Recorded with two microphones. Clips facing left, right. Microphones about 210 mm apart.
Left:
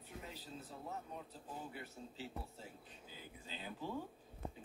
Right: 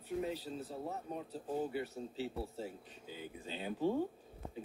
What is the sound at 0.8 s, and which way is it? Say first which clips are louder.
Speech: right 6 dB; 40° right (ahead or behind).